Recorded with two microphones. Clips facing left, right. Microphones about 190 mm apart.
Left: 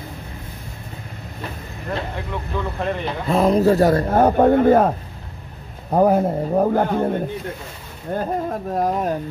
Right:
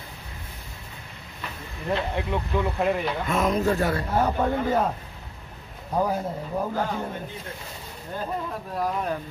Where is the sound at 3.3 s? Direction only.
35° left (ahead or behind).